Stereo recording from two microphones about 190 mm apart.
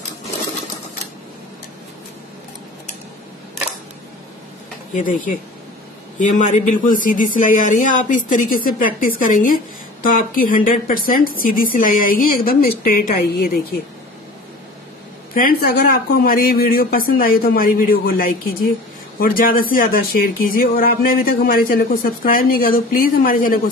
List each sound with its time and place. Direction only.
4.9 s speech: 45° left (ahead or behind)
15.3 s speech: 50° left (ahead or behind)